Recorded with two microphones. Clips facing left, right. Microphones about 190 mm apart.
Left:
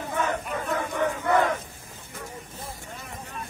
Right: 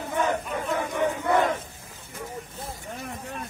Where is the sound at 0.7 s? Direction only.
15° right (ahead or behind).